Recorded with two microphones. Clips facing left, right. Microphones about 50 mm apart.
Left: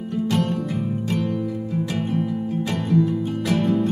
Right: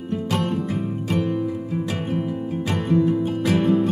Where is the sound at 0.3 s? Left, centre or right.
Centre.